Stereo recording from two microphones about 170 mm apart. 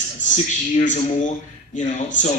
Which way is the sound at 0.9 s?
50° left (ahead or behind).